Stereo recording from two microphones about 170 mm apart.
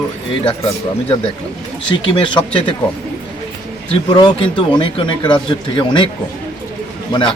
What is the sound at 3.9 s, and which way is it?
A man's voice, 25° left (ahead or behind).